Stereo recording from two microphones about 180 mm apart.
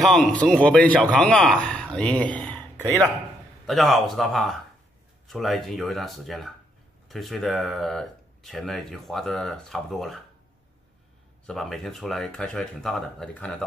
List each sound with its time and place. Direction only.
0.0 s speech: 5° left (ahead or behind)
11.4 s speech: centre (ahead or behind)